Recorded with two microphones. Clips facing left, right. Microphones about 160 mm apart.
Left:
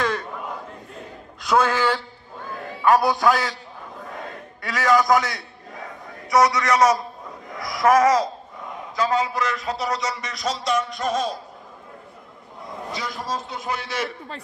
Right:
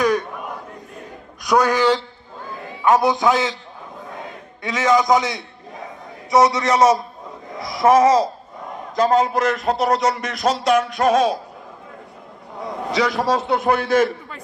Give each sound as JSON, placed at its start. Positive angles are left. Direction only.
{"t": 0.0, "sound": "a sound", "side_deg": -15}
{"t": 1.4, "sound": "a man's voice", "side_deg": -15}
{"t": 4.6, "sound": "a man's voice", "side_deg": -20}
{"t": 8.9, "sound": "music", "side_deg": -45}
{"t": 12.5, "sound": "a man's voice", "side_deg": -80}